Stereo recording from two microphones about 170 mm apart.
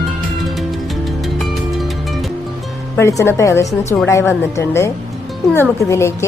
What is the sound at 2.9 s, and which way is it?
Speech, 15° left (ahead or behind).